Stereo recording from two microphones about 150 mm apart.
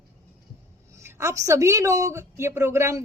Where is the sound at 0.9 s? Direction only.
20° right (ahead or behind).